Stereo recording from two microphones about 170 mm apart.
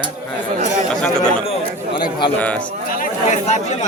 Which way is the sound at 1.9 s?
25° left (ahead or behind).